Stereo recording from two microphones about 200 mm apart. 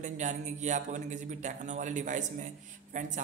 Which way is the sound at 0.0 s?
40° right (ahead or behind).